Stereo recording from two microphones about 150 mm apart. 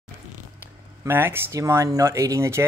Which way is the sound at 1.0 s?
15° right (ahead or behind).